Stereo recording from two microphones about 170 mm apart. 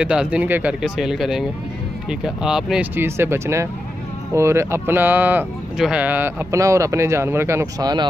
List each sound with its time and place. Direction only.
0.0 s speech: 5° right (ahead or behind); by 8.1 s 25° right (ahead or behind)